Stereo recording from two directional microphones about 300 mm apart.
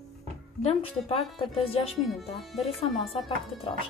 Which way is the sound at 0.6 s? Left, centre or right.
Centre.